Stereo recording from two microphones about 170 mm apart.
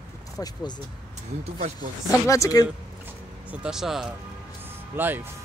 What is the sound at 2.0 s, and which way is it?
Speech, 20° left (ahead or behind).